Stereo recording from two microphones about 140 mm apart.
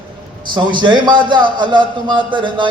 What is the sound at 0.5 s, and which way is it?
A man's voice, 35° right (ahead or behind).